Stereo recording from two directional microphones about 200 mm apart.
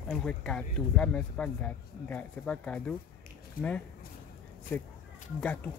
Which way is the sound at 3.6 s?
45° left (ahead or behind).